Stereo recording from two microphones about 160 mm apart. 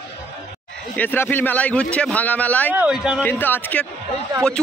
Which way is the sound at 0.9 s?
10° left (ahead or behind).